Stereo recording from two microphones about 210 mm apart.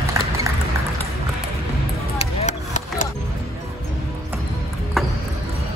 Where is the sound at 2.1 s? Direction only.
35° left (ahead or behind).